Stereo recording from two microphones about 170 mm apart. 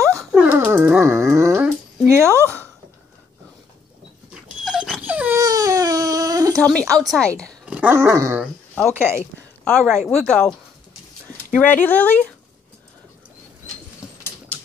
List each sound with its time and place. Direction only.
0.1 s dog: centre (ahead or behind)
0.6 s dog: 10° right (ahead or behind)
2.4 s a sound: 10° left (ahead or behind)
4.3 s dog: centre (ahead or behind)
5.4 s baby cry: 20° right (ahead or behind)
6.5 s speech: 5° left (ahead or behind)
7.6 s dog: 10° right (ahead or behind)
9.7 s speech: centre (ahead or behind)